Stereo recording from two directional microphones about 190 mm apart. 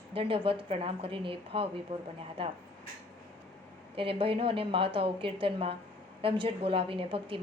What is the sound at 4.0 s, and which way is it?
A woman's voice, 30° right (ahead or behind).